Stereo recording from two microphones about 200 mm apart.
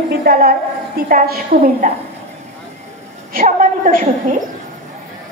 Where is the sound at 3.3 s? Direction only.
40° right (ahead or behind).